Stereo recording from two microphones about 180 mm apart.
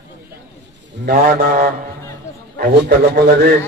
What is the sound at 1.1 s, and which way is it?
A man's voice, 60° right (ahead or behind).